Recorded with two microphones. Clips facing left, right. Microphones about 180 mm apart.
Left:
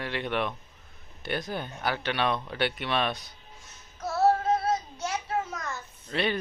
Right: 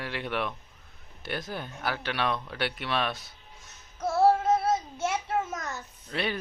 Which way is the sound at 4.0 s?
25° right (ahead or behind).